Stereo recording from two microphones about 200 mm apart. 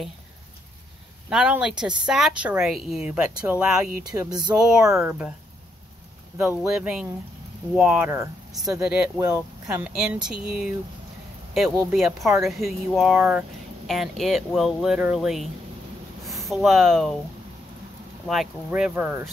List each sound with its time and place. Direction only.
1.3 s a woman's voice: 5° right (ahead or behind)
4.1 s a sound: 15° right (ahead or behind)
4.6 s a woman's voice: 5° right (ahead or behind)
6.3 s a woman's voice: 5° right (ahead or behind)
18.2 s a woman's voice: centre (ahead or behind)